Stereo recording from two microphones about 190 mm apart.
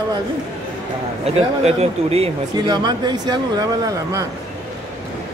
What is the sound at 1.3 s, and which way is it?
Speech, 30° right (ahead or behind).